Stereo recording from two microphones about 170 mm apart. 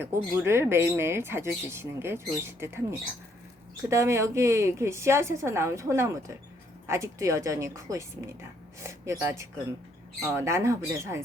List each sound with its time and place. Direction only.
0.0 s speech: 15° right (ahead or behind)
3.8 s speech: 15° right (ahead or behind)
10.3 s speech: 15° right (ahead or behind)